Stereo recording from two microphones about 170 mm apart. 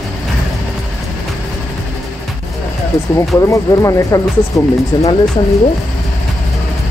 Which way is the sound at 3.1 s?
15° left (ahead or behind).